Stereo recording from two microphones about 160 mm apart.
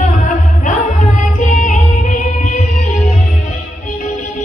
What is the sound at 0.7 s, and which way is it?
Music, 50° left (ahead or behind).